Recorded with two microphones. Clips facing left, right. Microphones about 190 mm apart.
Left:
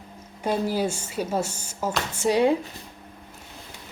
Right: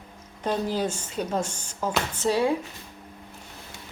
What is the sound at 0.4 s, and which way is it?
Speech, 10° left (ahead or behind).